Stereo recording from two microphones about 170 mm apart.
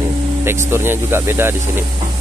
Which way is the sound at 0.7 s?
15° right (ahead or behind).